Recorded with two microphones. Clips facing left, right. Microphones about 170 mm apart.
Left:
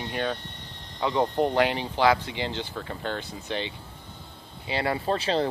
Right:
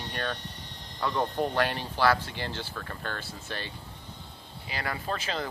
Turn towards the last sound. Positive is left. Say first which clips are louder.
# left 8 dB
turn(degrees=30)  # may be behind; listen again after turning